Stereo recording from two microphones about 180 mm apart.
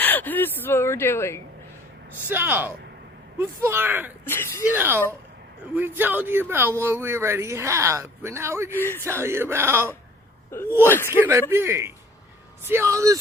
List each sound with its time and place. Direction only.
0.0 s speech: 10° left (ahead or behind)
2.3 s a man's voice: 10° right (ahead or behind)
4.3 s speech: 15° left (ahead or behind)
4.6 s a man's voice: 10° right (ahead or behind)
8.7 s speech: 15° left (ahead or behind)
9.0 s a man's voice: 15° right (ahead or behind)
10.5 s speech: 10° left (ahead or behind)
11.1 s a man's voice: 15° right (ahead or behind)